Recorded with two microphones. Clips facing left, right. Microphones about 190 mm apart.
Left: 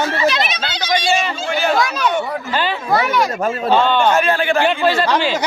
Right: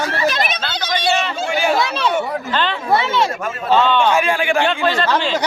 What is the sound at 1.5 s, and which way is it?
Speech, 10° right (ahead or behind).